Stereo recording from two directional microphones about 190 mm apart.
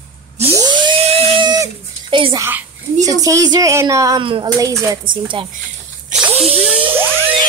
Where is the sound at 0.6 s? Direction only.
25° right (ahead or behind).